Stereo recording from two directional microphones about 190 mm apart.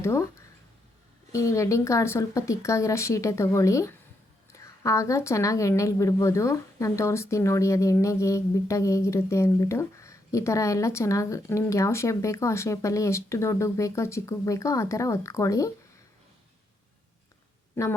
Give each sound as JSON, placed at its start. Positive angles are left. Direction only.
{"t": 0.0, "sound": "speech", "side_deg": 15}